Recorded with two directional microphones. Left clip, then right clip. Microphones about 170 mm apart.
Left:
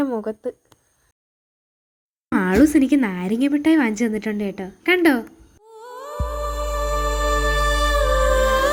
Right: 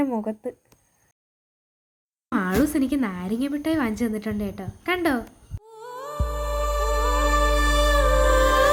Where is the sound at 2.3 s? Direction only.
25° left (ahead or behind).